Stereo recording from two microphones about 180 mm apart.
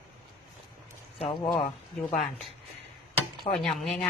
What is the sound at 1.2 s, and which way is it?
Speech, 30° left (ahead or behind).